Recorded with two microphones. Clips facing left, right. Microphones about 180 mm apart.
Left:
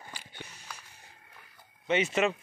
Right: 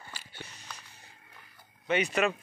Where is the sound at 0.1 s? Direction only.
15° left (ahead or behind).